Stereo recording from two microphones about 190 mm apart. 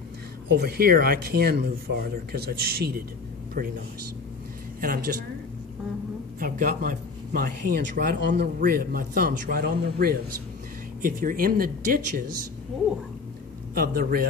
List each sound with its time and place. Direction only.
0.5 s speech: 55° right (ahead or behind)
4.7 s a woman's voice: 50° right (ahead or behind)
6.4 s speech: 45° right (ahead or behind)
13.7 s speech: 50° right (ahead or behind)